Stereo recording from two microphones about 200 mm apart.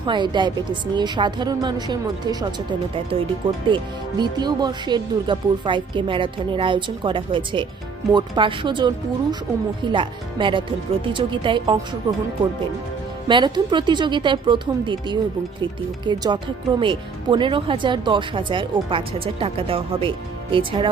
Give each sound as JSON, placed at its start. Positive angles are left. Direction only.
{"t": 0.0, "sound": "speech", "side_deg": -20}
{"t": 13.2, "sound": "speech", "side_deg": -25}